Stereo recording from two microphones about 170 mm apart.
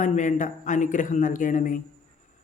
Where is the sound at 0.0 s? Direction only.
45° left (ahead or behind).